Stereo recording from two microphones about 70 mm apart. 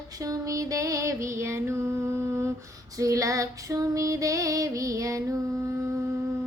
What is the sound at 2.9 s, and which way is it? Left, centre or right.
Female singing, right.